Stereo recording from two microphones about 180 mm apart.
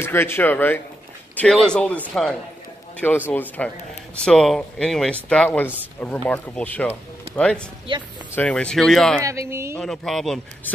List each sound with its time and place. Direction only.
0.0 s speech: 15° left (ahead or behind)
7.9 s speech: 30° right (ahead or behind)
8.4 s speech: 5° left (ahead or behind)
9.2 s speech: 15° right (ahead or behind)
9.8 s speech: centre (ahead or behind)